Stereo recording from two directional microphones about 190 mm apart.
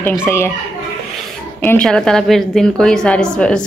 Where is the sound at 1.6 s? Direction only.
5° left (ahead or behind).